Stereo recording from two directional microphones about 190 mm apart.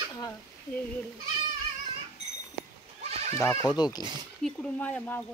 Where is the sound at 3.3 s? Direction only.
20° left (ahead or behind).